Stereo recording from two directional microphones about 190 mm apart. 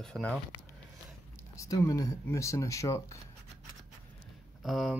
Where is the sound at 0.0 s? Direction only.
5° left (ahead or behind).